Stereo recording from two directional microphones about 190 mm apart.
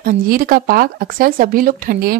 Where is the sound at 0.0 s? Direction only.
50° right (ahead or behind).